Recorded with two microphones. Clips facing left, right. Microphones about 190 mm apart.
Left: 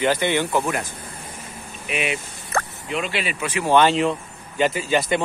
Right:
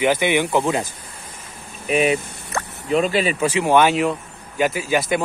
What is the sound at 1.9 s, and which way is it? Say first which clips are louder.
Speech: right 8 dB; 35° right (ahead or behind).